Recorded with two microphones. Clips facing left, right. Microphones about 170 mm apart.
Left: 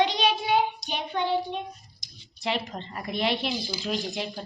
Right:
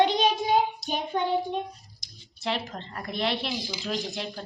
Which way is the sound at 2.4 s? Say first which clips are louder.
Left 1 dB; centre (ahead or behind).